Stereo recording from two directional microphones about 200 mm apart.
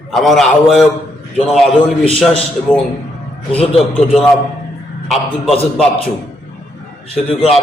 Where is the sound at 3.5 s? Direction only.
5° left (ahead or behind).